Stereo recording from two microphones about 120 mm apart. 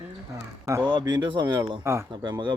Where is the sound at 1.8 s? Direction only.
20° right (ahead or behind).